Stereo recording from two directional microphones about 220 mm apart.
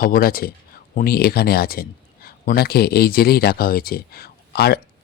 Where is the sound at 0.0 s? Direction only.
40° left (ahead or behind).